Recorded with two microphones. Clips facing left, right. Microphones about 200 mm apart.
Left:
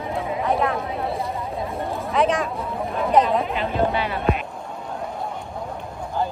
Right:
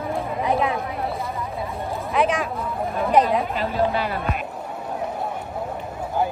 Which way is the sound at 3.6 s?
45° right (ahead or behind).